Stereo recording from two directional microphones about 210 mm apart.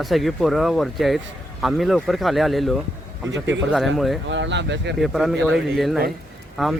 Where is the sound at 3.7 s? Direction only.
Centre (ahead or behind).